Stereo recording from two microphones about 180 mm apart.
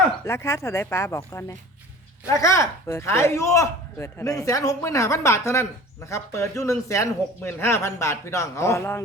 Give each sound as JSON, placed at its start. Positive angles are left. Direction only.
{"t": 0.3, "sound": "speech", "side_deg": 15}